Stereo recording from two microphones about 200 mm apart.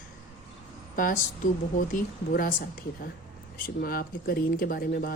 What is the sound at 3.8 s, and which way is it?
Speech, 50° left (ahead or behind).